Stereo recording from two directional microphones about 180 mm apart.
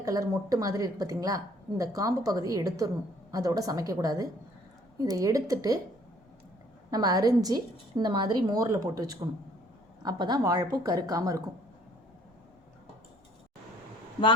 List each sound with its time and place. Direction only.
0.0 s a woman's voice: 20° right (ahead or behind)
6.9 s a woman's voice: 20° right (ahead or behind)